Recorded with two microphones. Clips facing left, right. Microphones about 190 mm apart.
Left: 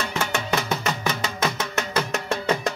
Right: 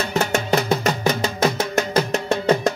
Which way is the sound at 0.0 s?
40° right (ahead or behind).